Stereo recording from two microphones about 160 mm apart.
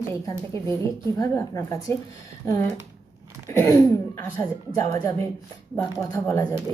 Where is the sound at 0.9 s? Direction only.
20° left (ahead or behind).